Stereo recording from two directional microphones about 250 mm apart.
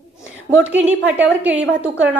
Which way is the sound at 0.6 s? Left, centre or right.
Centre.